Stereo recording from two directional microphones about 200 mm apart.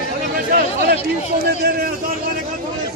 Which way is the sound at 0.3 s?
45° right (ahead or behind).